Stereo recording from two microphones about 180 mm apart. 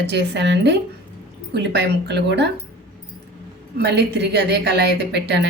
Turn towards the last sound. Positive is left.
turn(degrees=-70)  # may be behind; listen again after turning